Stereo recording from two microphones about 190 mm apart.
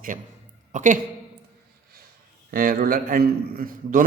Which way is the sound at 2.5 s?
50° right (ahead or behind).